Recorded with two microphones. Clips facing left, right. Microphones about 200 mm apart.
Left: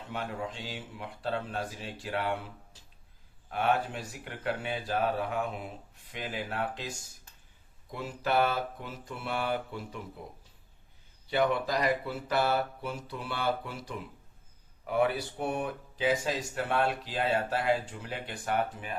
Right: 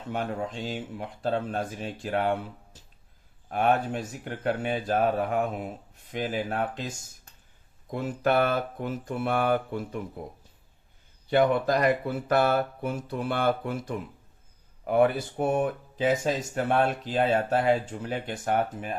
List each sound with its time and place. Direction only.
0.1 s speech: 45° right (ahead or behind)
3.5 s speech: 45° right (ahead or behind)
7.9 s speech: 50° right (ahead or behind)
11.3 s speech: 50° right (ahead or behind)